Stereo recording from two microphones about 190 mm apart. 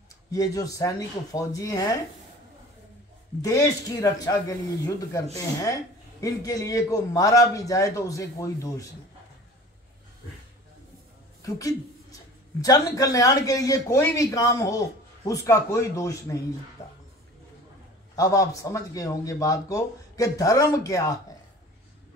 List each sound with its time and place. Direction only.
0.3 s speech: 20° left (ahead or behind)
3.4 s speech: 15° left (ahead or behind)
6.2 s speech: 20° left (ahead or behind)
11.4 s speech: 15° left (ahead or behind)
18.1 s speech: 15° left (ahead or behind)